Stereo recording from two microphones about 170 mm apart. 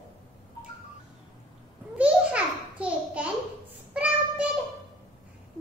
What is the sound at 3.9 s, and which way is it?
Child singing, 5° right (ahead or behind).